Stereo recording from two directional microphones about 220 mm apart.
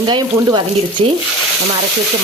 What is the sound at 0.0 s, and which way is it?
Speech, 20° right (ahead or behind).